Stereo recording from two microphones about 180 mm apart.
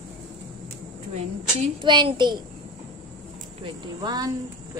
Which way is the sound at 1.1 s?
30° right (ahead or behind).